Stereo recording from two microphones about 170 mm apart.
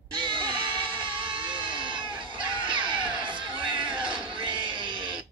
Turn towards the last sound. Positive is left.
turn(degrees=-30)  # may be behind; listen again after turning